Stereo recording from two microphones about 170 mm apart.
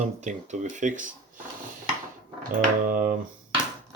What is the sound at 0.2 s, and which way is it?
Speech, 45° right (ahead or behind).